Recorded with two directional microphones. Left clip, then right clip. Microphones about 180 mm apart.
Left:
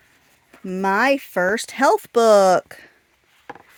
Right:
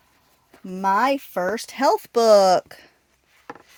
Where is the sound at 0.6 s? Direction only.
40° left (ahead or behind).